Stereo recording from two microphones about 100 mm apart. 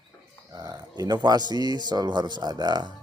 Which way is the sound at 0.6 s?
40° right (ahead or behind).